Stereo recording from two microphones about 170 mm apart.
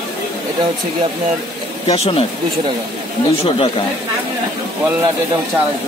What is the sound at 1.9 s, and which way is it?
Speech, 35° left (ahead or behind).